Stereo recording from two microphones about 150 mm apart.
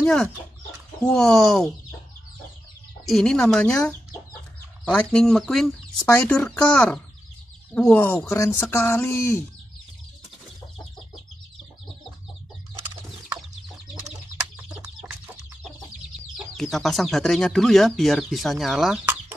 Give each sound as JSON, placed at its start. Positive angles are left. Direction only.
{"t": 0.0, "sound": "speech", "side_deg": 5}
{"t": 3.1, "sound": "speech", "side_deg": 0}
{"t": 14.0, "sound": "bird", "side_deg": -5}
{"t": 16.5, "sound": "speech", "side_deg": 0}